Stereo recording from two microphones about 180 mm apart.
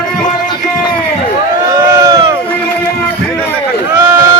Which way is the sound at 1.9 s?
15° right (ahead or behind).